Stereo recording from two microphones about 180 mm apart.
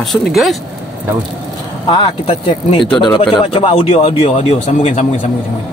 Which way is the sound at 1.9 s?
30° left (ahead or behind).